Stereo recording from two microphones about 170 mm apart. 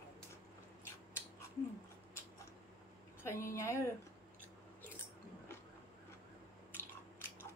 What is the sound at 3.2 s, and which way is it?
Speech, 15° left (ahead or behind).